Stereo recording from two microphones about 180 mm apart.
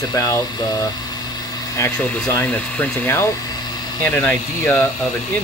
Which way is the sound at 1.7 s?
15° left (ahead or behind).